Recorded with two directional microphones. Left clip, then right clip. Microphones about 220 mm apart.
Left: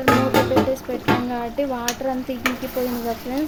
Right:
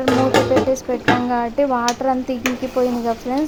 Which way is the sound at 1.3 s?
15° right (ahead or behind).